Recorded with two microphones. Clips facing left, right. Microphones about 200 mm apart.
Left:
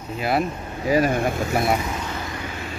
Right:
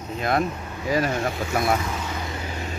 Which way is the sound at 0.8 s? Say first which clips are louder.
Left 4 dB; 10° left (ahead or behind).